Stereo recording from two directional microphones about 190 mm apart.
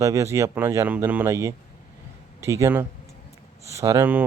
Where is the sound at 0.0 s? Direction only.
15° right (ahead or behind).